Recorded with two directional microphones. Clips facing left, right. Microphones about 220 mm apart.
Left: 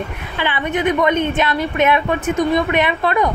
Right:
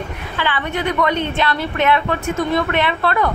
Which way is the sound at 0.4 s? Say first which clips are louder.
Left 2 dB; 20° left (ahead or behind).